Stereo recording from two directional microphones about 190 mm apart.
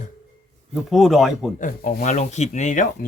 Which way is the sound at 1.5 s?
45° left (ahead or behind).